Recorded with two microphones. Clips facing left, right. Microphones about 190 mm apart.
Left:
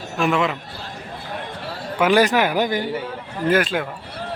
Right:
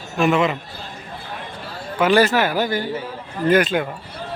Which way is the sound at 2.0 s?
10° left (ahead or behind).